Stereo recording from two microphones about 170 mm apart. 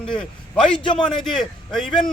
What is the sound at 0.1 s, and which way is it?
A man's voice, 5° left (ahead or behind).